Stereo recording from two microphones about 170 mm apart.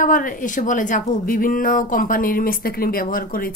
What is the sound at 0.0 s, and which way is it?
A woman's voice, 50° left (ahead or behind).